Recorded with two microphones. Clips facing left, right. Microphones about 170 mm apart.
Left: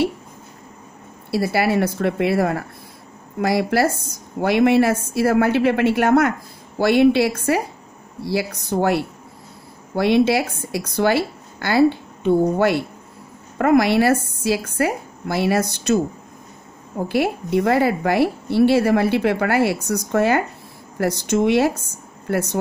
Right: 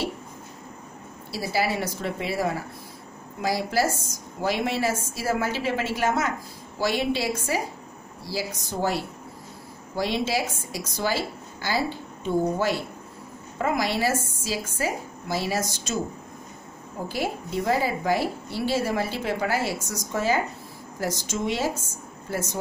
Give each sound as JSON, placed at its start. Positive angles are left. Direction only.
{"t": 1.3, "sound": "speech", "side_deg": 60}
{"t": 17.1, "sound": "speech", "side_deg": 65}